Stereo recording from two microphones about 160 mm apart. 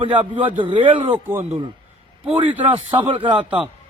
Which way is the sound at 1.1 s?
15° right (ahead or behind).